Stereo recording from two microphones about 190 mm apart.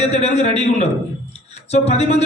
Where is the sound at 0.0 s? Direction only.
35° left (ahead or behind).